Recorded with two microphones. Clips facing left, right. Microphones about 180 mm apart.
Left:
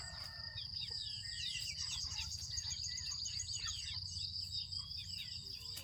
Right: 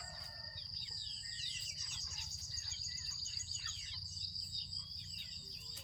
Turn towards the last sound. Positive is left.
turn(degrees=70)  # may be behind; listen again after turning